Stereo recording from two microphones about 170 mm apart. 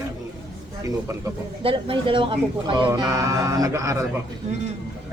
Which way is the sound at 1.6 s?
30° right (ahead or behind).